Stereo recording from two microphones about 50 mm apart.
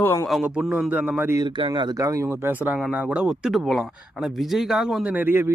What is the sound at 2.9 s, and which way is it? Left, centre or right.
Speech, right.